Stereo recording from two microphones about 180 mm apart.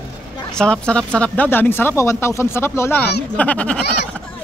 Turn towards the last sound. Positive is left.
turn(degrees=5)  # may be behind; listen again after turning